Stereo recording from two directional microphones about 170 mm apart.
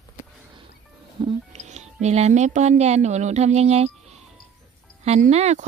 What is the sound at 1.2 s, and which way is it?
Speech, 40° right (ahead or behind).